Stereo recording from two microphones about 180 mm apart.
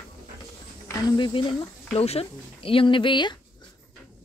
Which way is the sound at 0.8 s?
25° left (ahead or behind).